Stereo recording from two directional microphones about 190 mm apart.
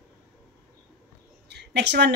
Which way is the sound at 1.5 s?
60° right (ahead or behind).